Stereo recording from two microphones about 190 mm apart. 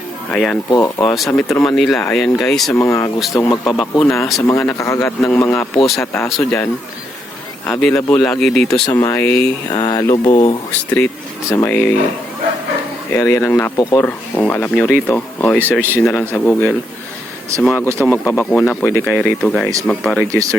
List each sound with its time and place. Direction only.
0.3 s speech: 5° left (ahead or behind)
0.7 s mantra: 20° left (ahead or behind)
1.3 s speech: 10° left (ahead or behind)
2.7 s speech: 15° left (ahead or behind)
3.3 s mantra: 20° left (ahead or behind)
3.9 s speech: 15° left (ahead or behind)
5.7 s speech: centre (ahead or behind)
7.6 s speech: 5° left (ahead or behind)
8.9 s mantra: 20° left (ahead or behind)
9.2 s speech: 10° left (ahead or behind)
9.7 s mantra: 20° left (ahead or behind)
10.7 s speech: 10° left (ahead or behind)
13.1 s speech: 15° left (ahead or behind)